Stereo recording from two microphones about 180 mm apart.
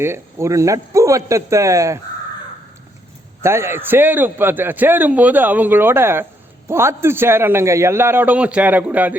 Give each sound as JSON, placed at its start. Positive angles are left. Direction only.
{"t": 0.0, "sound": "a man's voice", "side_deg": -15}
{"t": 3.4, "sound": "a man's voice", "side_deg": -15}